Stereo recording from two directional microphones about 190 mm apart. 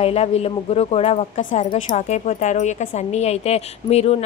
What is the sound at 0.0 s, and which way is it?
A woman's voice, 35° left (ahead or behind).